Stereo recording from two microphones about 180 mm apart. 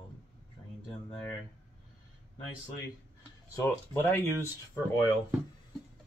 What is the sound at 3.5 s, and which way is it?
Speech, 15° left (ahead or behind).